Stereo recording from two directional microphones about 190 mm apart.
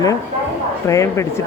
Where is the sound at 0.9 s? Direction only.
15° left (ahead or behind).